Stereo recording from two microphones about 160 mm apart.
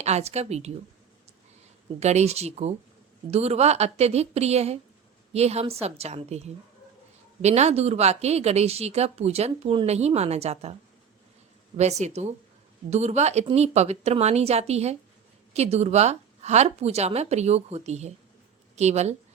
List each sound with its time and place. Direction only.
0.0 s speech: 40° right (ahead or behind)
2.0 s a woman's voice: 45° right (ahead or behind)
11.8 s speech: 45° right (ahead or behind)